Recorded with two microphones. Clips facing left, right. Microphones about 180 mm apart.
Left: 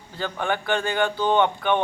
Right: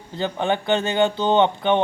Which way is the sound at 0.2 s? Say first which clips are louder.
Right 4 dB; 20° right (ahead or behind).